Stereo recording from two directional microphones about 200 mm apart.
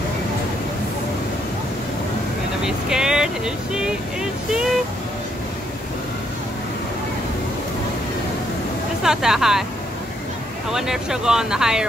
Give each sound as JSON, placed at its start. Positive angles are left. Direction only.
{"t": 2.6, "sound": "speech", "side_deg": -5}
{"t": 9.0, "sound": "speech", "side_deg": 0}
{"t": 10.7, "sound": "speech", "side_deg": -5}